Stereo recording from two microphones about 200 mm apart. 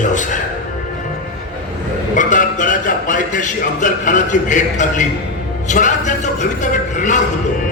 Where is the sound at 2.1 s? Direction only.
40° left (ahead or behind).